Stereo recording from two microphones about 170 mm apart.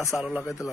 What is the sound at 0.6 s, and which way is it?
Speech, 20° left (ahead or behind).